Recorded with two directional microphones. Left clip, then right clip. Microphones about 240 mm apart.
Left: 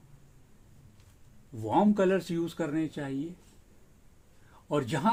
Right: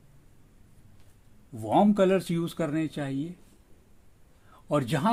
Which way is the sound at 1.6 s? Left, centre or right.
Right.